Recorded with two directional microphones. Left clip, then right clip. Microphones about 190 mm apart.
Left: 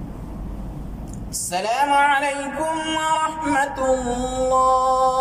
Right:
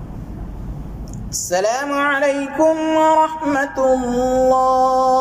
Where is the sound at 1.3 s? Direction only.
35° right (ahead or behind).